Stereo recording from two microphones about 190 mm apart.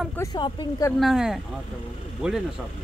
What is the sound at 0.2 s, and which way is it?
Speech, 20° left (ahead or behind).